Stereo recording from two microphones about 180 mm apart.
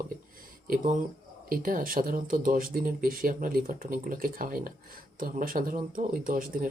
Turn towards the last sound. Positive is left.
turn(degrees=-50)  # may be behind; listen again after turning